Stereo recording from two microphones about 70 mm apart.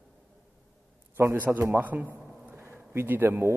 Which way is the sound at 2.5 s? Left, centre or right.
Right.